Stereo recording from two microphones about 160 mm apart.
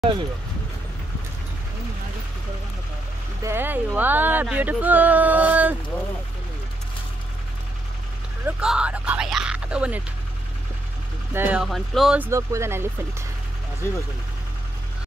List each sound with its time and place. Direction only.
3.4 s speech: 15° right (ahead or behind)
8.5 s speech: 5° right (ahead or behind)
11.3 s speech: 10° right (ahead or behind)
11.6 s speech: centre (ahead or behind)
12.2 s speech: 20° right (ahead or behind)